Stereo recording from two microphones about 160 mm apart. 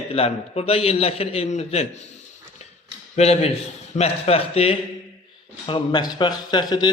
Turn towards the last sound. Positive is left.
turn(degrees=25)  # may be behind; listen again after turning